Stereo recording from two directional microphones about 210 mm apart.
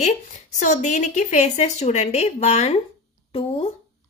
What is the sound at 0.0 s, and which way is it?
A woman's voice, 35° left (ahead or behind).